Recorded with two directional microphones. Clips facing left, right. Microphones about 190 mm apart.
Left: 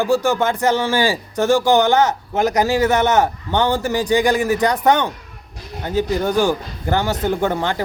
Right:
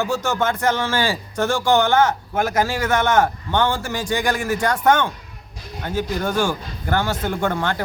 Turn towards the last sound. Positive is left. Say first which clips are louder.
# left 3 dB
turn(degrees=15)  # may be behind; listen again after turning